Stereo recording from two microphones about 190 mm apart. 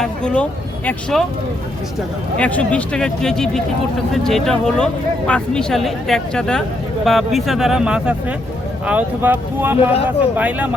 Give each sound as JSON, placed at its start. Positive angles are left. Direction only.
{"t": 0.0, "sound": "speech", "side_deg": 5}
{"t": 2.4, "sound": "speech", "side_deg": 5}